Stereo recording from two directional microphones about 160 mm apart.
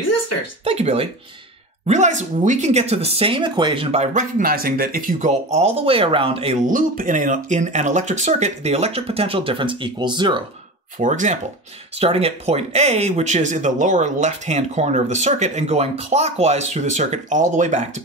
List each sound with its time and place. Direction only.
0.7 s speech: 40° right (ahead or behind)
6.6 s speech: 55° right (ahead or behind); by 10.4 s 30° right (ahead or behind)
11.0 s speech: 50° right (ahead or behind)
12.0 s speech: 40° right (ahead or behind)